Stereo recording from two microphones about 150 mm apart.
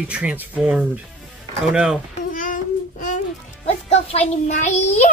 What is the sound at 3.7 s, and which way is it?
A child's voice, 45° left (ahead or behind).